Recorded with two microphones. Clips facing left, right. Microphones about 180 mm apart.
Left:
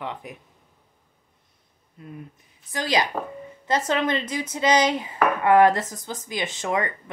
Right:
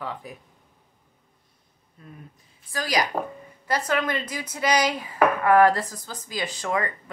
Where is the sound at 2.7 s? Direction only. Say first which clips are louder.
Left 1 dB; 25° left (ahead or behind).